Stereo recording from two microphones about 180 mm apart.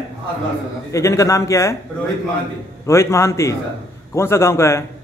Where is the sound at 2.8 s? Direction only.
15° left (ahead or behind).